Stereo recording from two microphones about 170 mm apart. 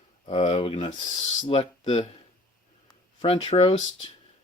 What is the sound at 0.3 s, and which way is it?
Speech, 30° left (ahead or behind).